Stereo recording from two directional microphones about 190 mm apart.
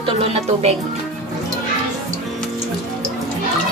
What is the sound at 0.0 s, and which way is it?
Speech, 35° right (ahead or behind).